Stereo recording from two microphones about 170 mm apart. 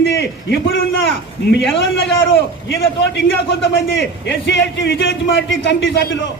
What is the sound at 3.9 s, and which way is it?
A man's voice, 90° left.